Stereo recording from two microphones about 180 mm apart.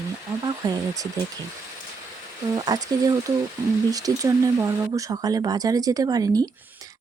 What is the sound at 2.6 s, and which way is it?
A woman's voice, 20° right (ahead or behind).